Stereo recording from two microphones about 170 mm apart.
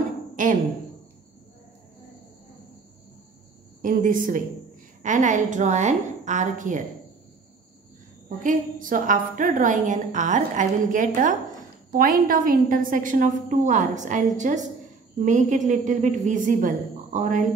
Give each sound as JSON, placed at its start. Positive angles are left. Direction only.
{"t": 0.4, "sound": "speech", "side_deg": -50}
{"t": 3.8, "sound": "a woman's voice", "side_deg": -50}
{"t": 8.4, "sound": "a woman's voice", "side_deg": -55}